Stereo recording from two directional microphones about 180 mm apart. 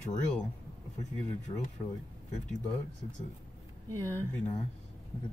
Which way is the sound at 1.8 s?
30° left (ahead or behind).